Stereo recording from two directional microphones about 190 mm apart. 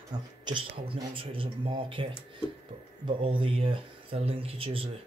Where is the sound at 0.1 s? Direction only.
20° right (ahead or behind).